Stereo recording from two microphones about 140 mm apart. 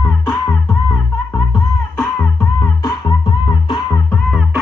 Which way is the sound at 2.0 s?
10° left (ahead or behind).